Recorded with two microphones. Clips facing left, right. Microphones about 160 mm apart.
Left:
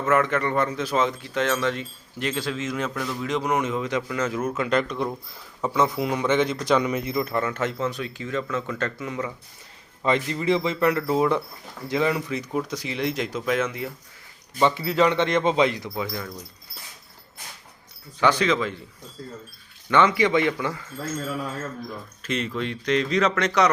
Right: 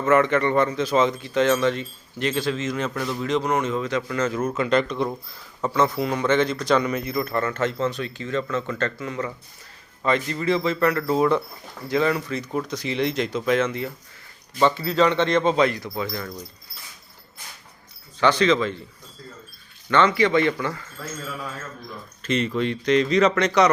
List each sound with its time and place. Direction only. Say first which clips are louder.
0.0 s speech: right 3 dB; centre (ahead or behind)
3.2 s speech: right 1 dB; 10° left (ahead or behind)
16.0 s speech: right 1 dB; 5° left (ahead or behind)
18.2 s speech: right 2 dB; 10° left (ahead or behind)
19.9 s speech: right 1 dB; 15° left (ahead or behind)
22.2 s speech: right 5 dB; 5° left (ahead or behind)